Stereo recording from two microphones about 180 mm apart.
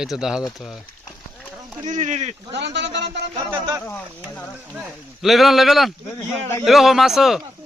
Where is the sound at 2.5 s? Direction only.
75° right (ahead or behind).